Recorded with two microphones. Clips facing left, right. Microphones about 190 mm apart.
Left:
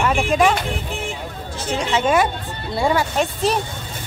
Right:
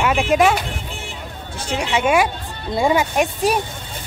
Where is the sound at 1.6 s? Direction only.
10° right (ahead or behind).